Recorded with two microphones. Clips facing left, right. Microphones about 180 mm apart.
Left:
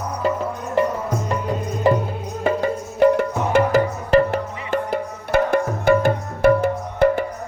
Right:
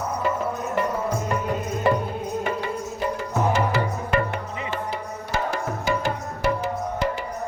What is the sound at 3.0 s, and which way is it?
Music, 65° left (ahead or behind).